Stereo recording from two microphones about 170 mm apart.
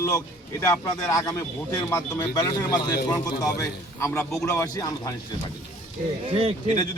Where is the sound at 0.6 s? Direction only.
20° left (ahead or behind).